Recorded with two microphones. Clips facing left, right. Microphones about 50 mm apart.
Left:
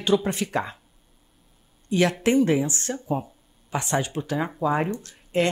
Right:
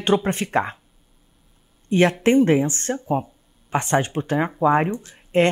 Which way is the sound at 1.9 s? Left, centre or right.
Right.